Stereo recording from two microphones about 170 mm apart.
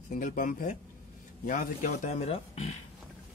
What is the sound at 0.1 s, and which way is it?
Speech, 50° left (ahead or behind).